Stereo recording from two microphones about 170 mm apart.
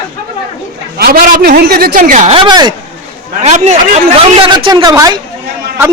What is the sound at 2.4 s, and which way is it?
Speech, 25° right (ahead or behind).